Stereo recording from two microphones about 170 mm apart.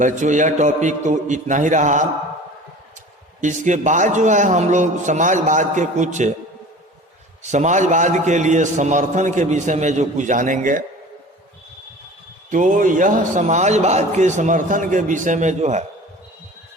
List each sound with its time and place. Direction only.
0.0 s a man's voice: 45° right (ahead or behind)
3.4 s a man's voice: 45° right (ahead or behind)
7.4 s a man's voice: 45° right (ahead or behind)
12.5 s a man's voice: 50° right (ahead or behind)